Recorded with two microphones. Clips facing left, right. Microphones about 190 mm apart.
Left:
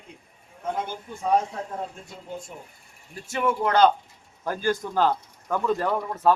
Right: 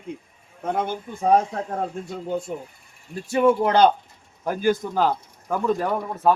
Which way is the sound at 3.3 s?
15° right (ahead or behind).